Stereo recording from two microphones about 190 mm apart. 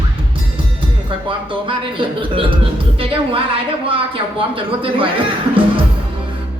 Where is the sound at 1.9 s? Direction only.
25° right (ahead or behind).